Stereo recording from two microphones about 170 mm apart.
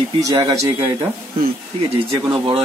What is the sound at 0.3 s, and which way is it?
Speech, 20° right (ahead or behind).